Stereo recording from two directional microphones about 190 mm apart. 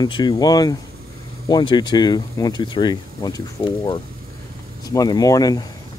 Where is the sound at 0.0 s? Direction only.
20° left (ahead or behind).